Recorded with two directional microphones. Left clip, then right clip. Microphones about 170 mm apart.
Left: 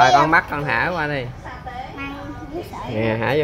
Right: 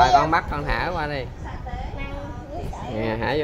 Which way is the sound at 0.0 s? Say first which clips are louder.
Left 3 dB; 5° left (ahead or behind).